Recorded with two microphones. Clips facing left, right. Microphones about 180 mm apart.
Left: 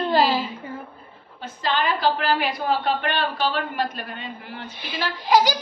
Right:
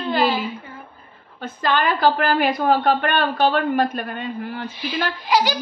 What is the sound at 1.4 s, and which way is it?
A woman's voice, 55° right (ahead or behind).